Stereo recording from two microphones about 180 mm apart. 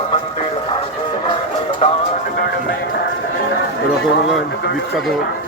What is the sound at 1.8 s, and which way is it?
Music, 35° left (ahead or behind).